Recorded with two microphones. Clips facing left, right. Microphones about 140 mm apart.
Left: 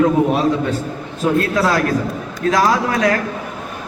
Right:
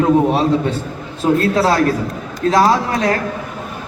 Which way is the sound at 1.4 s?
30° right (ahead or behind).